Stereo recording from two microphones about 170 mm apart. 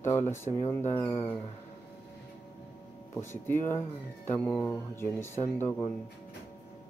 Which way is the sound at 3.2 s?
15° left (ahead or behind).